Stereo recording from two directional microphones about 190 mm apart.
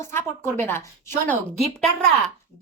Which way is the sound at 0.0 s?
15° left (ahead or behind).